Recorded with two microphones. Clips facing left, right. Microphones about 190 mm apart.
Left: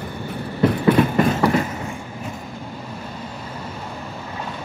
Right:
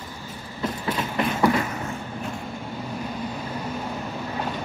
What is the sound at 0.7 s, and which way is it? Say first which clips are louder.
Train: left 12 dB; 60° left (ahead or behind).